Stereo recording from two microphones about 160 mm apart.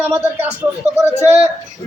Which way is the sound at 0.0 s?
15° right (ahead or behind).